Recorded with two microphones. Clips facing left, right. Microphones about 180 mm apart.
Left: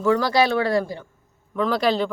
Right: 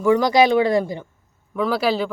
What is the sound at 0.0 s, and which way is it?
Speech, 15° right (ahead or behind).